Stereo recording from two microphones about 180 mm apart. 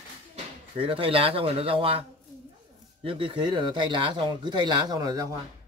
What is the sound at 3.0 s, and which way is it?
Speech, 30° right (ahead or behind).